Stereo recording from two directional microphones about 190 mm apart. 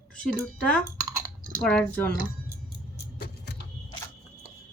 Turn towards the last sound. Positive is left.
turn(degrees=60)  # may be behind; listen again after turning